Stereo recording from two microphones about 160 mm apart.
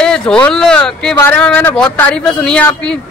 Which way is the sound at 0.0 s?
5° left (ahead or behind).